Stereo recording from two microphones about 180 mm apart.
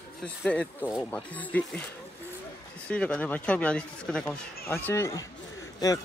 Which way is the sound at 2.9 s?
5° left (ahead or behind).